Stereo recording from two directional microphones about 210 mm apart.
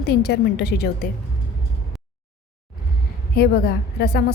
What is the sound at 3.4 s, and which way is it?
Speech, 50° left (ahead or behind).